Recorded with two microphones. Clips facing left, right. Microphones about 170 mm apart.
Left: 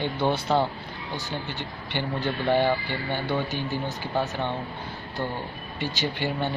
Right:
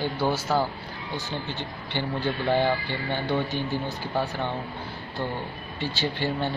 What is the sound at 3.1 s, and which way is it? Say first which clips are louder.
Speech: right 1 dB; 15° right (ahead or behind).